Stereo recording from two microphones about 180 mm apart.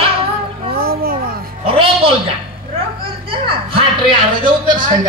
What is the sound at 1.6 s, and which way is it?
Music, 30° right (ahead or behind).